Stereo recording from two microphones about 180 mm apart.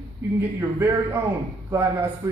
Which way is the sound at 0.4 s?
15° right (ahead or behind).